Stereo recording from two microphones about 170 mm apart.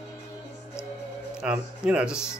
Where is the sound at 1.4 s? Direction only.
5° right (ahead or behind).